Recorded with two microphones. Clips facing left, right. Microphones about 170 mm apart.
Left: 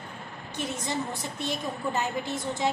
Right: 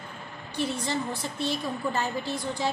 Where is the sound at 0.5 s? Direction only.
20° left (ahead or behind).